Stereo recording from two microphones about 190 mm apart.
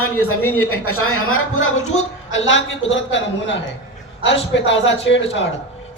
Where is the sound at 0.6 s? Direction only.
90° left.